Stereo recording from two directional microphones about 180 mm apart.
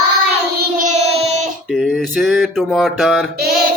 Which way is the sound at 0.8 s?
40° right (ahead or behind).